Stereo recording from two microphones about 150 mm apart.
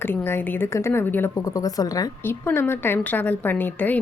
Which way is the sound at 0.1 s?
15° left (ahead or behind).